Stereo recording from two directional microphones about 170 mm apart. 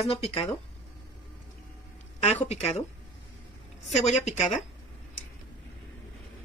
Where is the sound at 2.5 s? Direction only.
35° left (ahead or behind).